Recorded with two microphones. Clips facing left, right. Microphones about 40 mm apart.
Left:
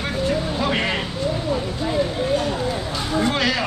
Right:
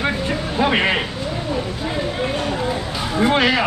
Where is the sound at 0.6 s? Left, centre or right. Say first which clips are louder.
Right 4 dB; right.